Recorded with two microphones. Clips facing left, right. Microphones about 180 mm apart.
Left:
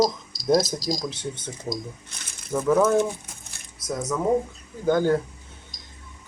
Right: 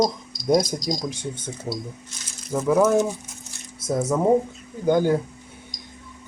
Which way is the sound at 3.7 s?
25° right (ahead or behind).